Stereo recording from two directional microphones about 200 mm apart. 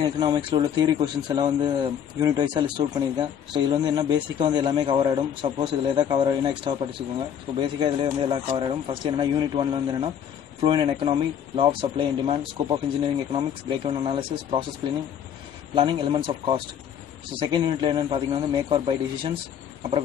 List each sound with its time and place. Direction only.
0.0 s a man's voice: 25° right (ahead or behind)
15.7 s a man's voice: 25° right (ahead or behind)